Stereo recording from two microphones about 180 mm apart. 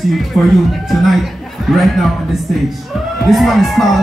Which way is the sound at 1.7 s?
Centre (ahead or behind).